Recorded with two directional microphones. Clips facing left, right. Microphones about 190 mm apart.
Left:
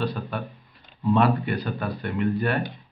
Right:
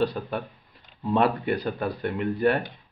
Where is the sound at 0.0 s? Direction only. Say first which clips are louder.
Right 2 dB; 20° right (ahead or behind).